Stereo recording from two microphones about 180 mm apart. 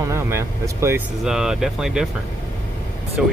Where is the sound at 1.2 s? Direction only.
5° right (ahead or behind).